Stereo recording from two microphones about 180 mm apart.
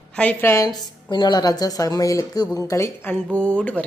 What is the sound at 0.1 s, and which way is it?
A woman's voice, 5° left (ahead or behind).